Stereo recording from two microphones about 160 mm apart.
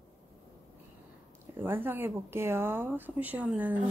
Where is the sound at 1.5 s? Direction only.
15° right (ahead or behind).